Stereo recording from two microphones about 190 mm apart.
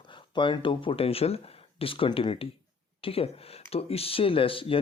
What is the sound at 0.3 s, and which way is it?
Speech, 25° left (ahead or behind).